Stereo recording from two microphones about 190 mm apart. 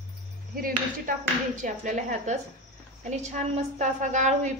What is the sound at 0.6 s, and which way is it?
A woman's voice, 50° right (ahead or behind).